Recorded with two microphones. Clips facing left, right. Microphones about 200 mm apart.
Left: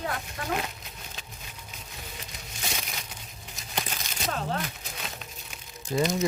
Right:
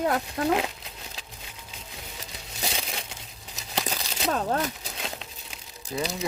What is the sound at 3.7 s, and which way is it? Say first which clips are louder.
Crumpling: right 4 dB; 40° right (ahead or behind).